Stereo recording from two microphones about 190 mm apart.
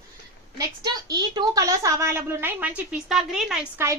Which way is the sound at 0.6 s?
20° right (ahead or behind).